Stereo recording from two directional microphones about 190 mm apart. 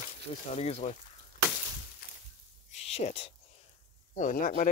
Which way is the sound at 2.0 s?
50° left (ahead or behind).